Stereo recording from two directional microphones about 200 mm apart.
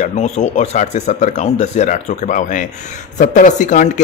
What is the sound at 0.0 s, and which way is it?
Speech, 35° left (ahead or behind).